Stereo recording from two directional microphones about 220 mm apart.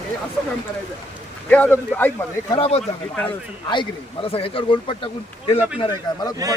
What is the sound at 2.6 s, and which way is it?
Speech, 30° left (ahead or behind).